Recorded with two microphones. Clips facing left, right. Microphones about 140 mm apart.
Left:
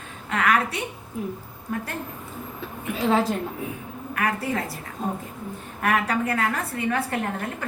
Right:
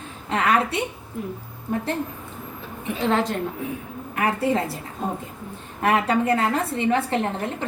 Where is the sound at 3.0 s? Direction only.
5° left (ahead or behind).